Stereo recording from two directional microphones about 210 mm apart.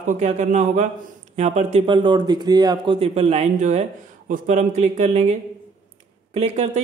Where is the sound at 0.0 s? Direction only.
35° right (ahead or behind).